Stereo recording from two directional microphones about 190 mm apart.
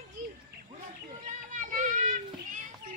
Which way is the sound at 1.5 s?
40° right (ahead or behind).